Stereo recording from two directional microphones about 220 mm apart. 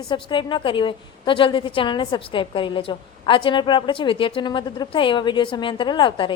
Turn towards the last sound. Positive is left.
turn(degrees=20)  # may be behind; listen again after turning